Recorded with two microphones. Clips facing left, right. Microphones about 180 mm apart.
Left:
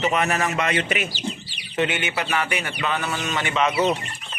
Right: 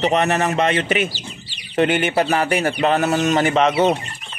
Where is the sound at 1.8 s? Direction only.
50° right (ahead or behind).